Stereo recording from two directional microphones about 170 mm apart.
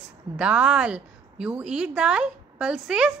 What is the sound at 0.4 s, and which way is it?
A woman's voice, 5° right (ahead or behind).